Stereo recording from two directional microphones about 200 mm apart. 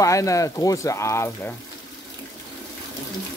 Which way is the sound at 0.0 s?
15° left (ahead or behind).